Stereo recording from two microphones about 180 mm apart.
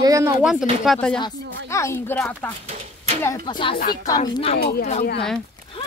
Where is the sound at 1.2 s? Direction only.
15° left (ahead or behind).